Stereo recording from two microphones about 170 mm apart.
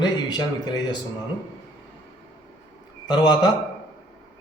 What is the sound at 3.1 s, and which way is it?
Speech, 25° left (ahead or behind).